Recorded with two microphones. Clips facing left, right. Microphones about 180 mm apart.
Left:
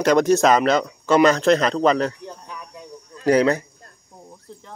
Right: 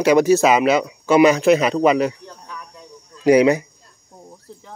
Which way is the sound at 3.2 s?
10° right (ahead or behind).